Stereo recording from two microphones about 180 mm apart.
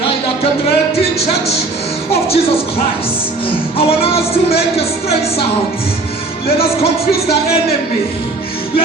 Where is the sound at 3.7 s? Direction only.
30° left (ahead or behind).